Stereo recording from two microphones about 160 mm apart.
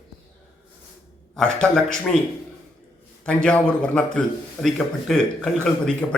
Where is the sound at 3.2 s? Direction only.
5° left (ahead or behind).